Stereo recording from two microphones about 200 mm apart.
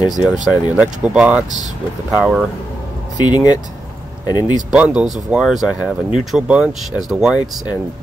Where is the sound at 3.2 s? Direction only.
20° left (ahead or behind).